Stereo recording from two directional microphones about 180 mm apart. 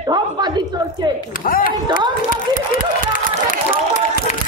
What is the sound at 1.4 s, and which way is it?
Speech, 50° left (ahead or behind).